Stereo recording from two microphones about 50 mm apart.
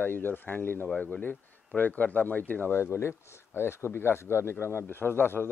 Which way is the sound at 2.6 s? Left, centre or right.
Left.